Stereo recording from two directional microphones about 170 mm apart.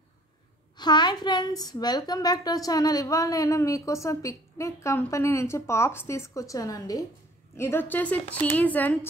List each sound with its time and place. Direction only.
0.7 s a woman's voice: 25° left (ahead or behind); by 8.9 s 10° left (ahead or behind)